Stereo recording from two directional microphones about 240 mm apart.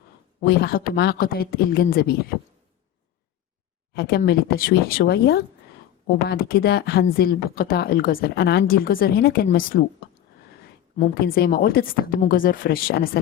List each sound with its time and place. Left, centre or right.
0.3 s speech: left
3.9 s speech: left